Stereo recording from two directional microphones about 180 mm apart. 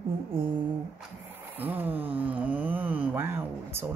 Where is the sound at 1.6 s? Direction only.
10° right (ahead or behind).